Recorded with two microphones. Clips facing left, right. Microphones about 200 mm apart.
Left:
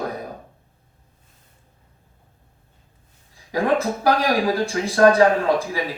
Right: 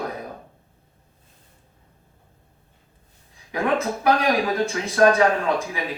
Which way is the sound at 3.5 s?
35° left (ahead or behind).